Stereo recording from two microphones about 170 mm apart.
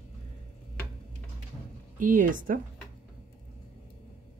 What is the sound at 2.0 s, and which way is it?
Speech, 50° right (ahead or behind).